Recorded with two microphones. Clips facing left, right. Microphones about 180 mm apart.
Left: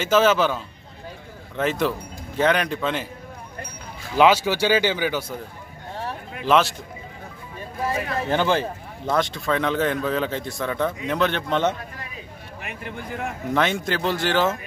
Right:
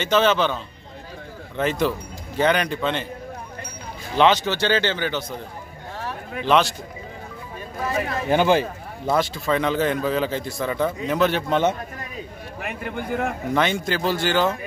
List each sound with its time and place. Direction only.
0.0 s a man's voice: 5° left (ahead or behind)
1.6 s a man's voice: centre (ahead or behind)
4.2 s speech: 10° left (ahead or behind)
6.4 s a man's voice: centre (ahead or behind)
8.3 s a man's voice: 15° right (ahead or behind)
12.6 s speech: 65° right (ahead or behind)
13.5 s a man's voice: centre (ahead or behind)